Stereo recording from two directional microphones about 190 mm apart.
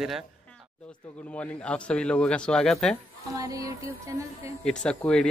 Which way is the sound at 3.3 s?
20° right (ahead or behind).